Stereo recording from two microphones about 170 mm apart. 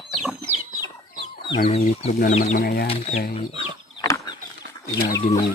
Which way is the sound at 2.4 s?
60° left (ahead or behind).